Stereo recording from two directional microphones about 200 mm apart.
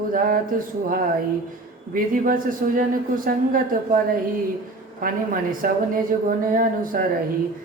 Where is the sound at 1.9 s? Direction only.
45° right (ahead or behind).